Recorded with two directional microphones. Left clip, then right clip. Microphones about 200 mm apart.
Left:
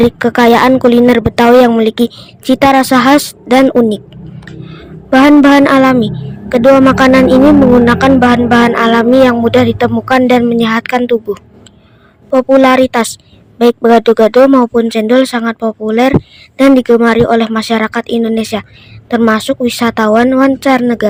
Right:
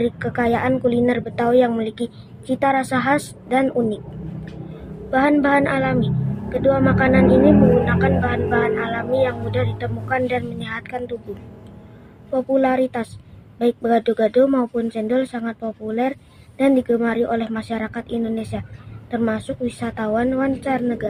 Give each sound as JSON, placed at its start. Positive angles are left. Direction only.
{"t": 0.0, "sound": "a woman's voice", "side_deg": 50}
{"t": 5.1, "sound": "a woman's voice", "side_deg": 50}
{"t": 12.3, "sound": "a woman's voice", "side_deg": 50}